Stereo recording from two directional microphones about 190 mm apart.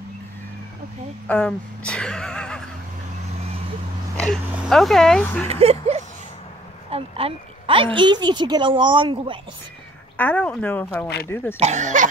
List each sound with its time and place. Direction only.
1.2 s speech: 5° left (ahead or behind)
4.2 s speech: centre (ahead or behind)
5.5 s a sound: 35° right (ahead or behind)
6.9 s a woman's voice: 30° right (ahead or behind)
10.1 s speech: 10° left (ahead or behind)
11.5 s speech: 35° right (ahead or behind)